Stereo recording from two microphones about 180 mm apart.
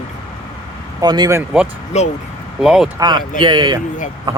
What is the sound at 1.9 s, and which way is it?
Speech, 40° left (ahead or behind).